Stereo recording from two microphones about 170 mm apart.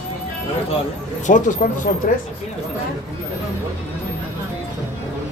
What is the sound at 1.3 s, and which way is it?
Speech, 50° left (ahead or behind).